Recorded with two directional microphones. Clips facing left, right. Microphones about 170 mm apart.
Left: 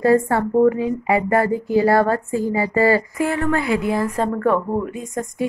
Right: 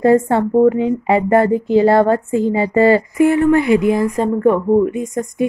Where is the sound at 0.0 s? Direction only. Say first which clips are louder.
Right 4 dB; 20° right (ahead or behind).